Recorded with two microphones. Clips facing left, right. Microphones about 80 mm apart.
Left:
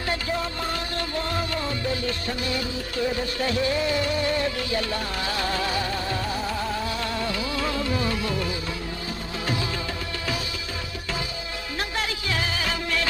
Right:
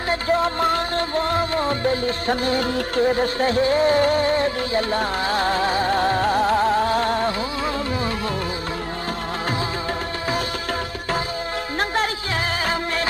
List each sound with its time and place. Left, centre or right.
0.1 s music: right
6.0 s music: right
12.6 s music of bollywood: right